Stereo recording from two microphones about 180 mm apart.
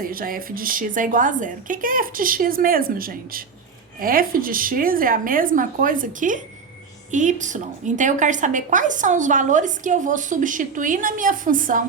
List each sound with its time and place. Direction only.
0.0 s a woman's voice: 50° right (ahead or behind)